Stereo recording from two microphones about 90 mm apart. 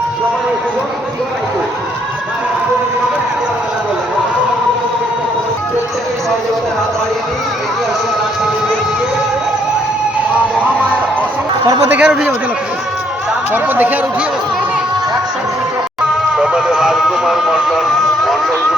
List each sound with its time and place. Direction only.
11.9 s speech: 15° right (ahead or behind)
13.5 s speech: 20° right (ahead or behind)
16.4 s music: 10° right (ahead or behind)